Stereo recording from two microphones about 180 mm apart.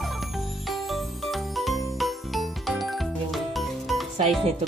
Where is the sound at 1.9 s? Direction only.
Centre (ahead or behind).